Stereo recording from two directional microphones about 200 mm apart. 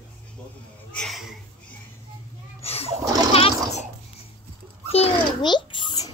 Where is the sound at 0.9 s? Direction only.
Centre (ahead or behind).